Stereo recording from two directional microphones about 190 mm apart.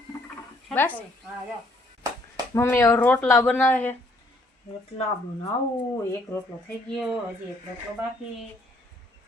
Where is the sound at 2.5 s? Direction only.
15° left (ahead or behind).